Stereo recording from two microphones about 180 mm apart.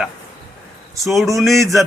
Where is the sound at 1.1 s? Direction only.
Centre (ahead or behind).